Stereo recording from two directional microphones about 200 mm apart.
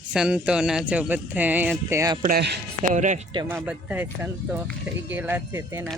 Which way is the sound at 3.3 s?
15° right (ahead or behind).